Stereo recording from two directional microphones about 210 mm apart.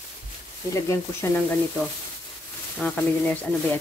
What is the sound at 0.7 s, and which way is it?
Speech, 15° left (ahead or behind).